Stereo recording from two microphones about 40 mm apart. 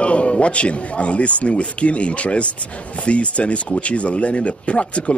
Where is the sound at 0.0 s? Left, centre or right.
Left.